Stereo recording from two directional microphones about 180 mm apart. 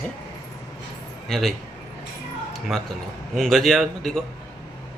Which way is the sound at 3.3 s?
Centre (ahead or behind).